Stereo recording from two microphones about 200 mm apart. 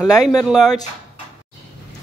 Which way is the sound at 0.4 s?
Centre (ahead or behind).